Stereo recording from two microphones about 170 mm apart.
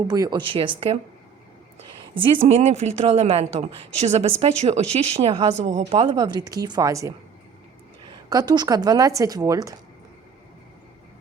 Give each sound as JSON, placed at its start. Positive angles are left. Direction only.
{"t": 0.1, "sound": "a woman's voice", "side_deg": -25}
{"t": 2.2, "sound": "speech", "side_deg": -30}
{"t": 8.3, "sound": "a woman's voice", "side_deg": -25}